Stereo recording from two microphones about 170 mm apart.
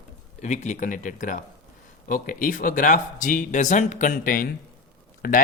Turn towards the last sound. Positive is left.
turn(degrees=60)  # may be behind; listen again after turning